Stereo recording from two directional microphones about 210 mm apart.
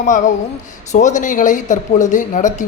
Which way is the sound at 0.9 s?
35° left (ahead or behind).